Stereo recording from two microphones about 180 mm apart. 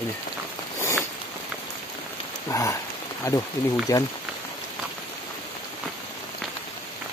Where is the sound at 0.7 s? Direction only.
15° left (ahead or behind).